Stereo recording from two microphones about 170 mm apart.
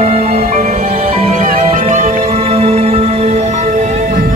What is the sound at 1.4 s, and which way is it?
Music, 50° right (ahead or behind).